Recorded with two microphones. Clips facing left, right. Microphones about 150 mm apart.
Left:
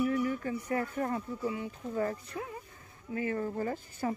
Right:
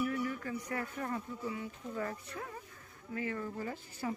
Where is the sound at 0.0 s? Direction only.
25° left (ahead or behind).